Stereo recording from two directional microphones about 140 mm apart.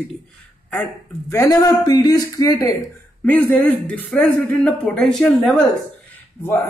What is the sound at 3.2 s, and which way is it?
Speech, 10° left (ahead or behind).